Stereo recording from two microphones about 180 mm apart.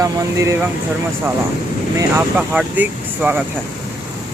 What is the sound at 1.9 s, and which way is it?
Speech, 10° right (ahead or behind).